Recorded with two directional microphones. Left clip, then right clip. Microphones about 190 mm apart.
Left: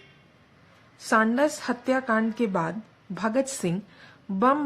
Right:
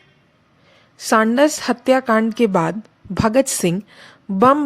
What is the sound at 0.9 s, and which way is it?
Speech, 40° right (ahead or behind).